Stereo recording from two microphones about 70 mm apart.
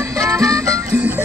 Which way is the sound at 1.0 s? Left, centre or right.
Right.